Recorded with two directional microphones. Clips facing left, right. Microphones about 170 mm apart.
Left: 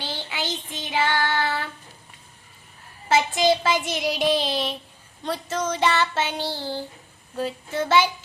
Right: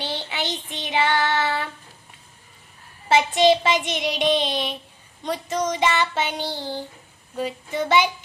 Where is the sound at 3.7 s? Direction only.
5° left (ahead or behind).